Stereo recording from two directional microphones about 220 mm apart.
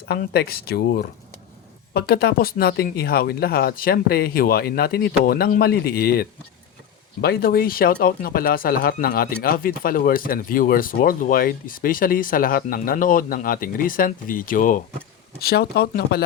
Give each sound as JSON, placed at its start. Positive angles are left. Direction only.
{"t": 0.1, "sound": "speech", "side_deg": 45}